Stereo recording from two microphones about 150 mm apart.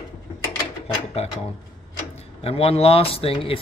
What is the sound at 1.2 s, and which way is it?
Speech, 45° left (ahead or behind).